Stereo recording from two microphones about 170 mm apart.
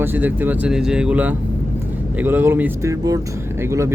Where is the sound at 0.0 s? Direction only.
10° right (ahead or behind).